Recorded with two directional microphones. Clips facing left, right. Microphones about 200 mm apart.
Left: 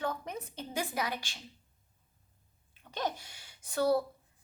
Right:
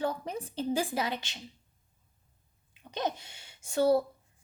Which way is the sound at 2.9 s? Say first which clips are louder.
Right 2 dB; 20° right (ahead or behind).